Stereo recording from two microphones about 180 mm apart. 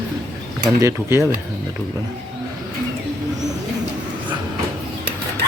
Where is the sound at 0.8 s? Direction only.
15° right (ahead or behind).